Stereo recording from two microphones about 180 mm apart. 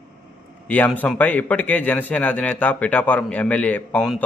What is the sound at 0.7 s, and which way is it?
A man's voice, 10° left (ahead or behind).